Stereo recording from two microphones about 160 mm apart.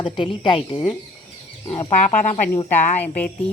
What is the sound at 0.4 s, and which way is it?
A woman's voice, 30° left (ahead or behind).